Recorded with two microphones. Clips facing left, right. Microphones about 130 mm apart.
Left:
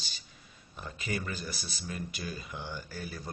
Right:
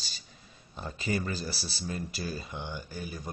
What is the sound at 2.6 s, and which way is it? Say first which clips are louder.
Speech: right 2 dB; 15° right (ahead or behind).